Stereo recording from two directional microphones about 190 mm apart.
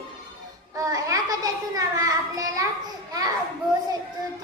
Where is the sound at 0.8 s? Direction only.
20° right (ahead or behind).